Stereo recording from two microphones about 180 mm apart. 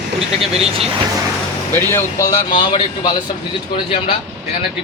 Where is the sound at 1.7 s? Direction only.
15° left (ahead or behind).